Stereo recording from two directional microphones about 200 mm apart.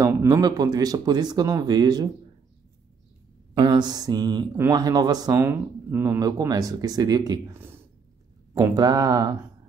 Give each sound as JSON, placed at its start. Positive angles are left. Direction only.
{"t": 0.0, "sound": "speech", "side_deg": -15}
{"t": 3.5, "sound": "speech", "side_deg": -20}